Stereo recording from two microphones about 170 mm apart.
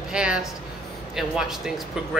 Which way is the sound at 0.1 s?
5° right (ahead or behind).